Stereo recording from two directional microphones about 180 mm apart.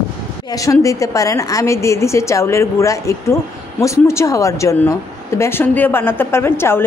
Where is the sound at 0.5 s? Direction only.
15° left (ahead or behind).